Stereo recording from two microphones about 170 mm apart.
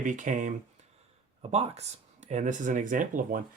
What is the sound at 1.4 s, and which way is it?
Speech, 40° right (ahead or behind).